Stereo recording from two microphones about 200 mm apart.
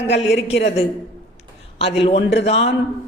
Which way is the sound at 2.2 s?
60° left (ahead or behind).